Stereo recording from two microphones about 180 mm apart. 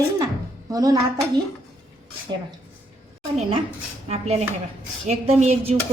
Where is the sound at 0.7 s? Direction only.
20° right (ahead or behind).